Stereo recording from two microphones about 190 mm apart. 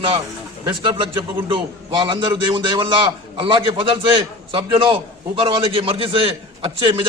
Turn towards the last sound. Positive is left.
turn(degrees=-25)  # may be behind; listen again after turning